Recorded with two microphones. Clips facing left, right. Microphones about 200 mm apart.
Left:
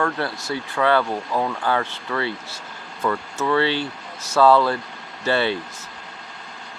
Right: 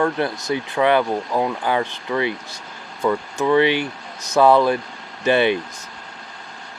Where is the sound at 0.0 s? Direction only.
20° right (ahead or behind).